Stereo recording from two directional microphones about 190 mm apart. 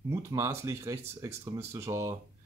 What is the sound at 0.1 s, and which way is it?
Speech, 15° right (ahead or behind).